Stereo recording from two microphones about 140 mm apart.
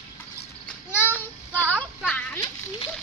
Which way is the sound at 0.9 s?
15° left (ahead or behind).